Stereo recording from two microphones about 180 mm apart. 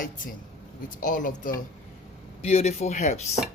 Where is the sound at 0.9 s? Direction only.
50° left (ahead or behind).